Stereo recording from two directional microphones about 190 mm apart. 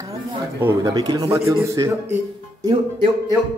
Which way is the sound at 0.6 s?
15° right (ahead or behind).